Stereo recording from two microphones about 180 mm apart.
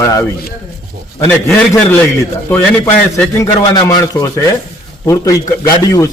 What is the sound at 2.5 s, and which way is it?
A man's voice, 10° left (ahead or behind).